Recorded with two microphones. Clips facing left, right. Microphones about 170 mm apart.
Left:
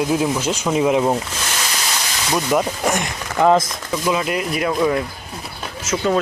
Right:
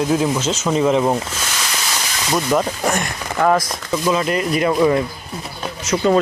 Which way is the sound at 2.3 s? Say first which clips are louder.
Right 1 dB; 5° left (ahead or behind).